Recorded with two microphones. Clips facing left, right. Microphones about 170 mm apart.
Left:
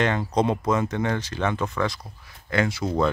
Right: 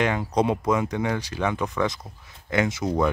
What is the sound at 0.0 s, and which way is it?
Speech, 10° right (ahead or behind).